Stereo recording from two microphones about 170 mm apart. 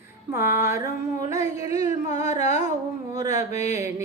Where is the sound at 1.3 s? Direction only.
20° right (ahead or behind).